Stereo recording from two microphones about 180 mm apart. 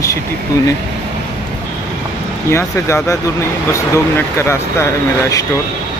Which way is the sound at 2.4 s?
15° left (ahead or behind).